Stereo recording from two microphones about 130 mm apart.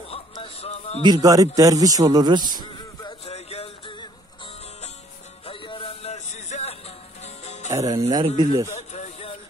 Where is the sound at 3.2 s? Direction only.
50° left (ahead or behind).